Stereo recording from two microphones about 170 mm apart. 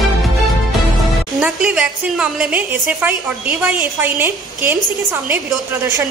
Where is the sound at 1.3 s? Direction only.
5° right (ahead or behind).